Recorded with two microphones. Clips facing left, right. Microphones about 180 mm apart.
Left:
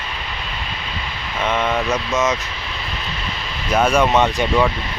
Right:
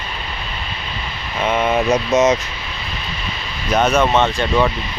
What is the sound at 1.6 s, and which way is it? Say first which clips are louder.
Speech: right 4 dB; 20° right (ahead or behind).